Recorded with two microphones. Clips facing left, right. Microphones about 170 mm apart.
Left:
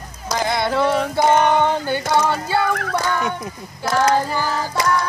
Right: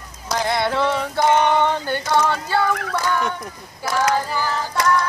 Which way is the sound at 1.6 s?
10° left (ahead or behind).